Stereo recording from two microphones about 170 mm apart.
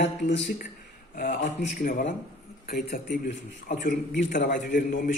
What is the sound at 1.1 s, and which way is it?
A man's voice, 55° left (ahead or behind).